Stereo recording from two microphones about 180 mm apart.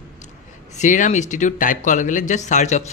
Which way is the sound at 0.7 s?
45° left (ahead or behind).